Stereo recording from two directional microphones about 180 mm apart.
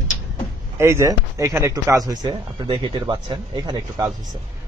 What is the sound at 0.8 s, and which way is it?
Speech, 15° right (ahead or behind).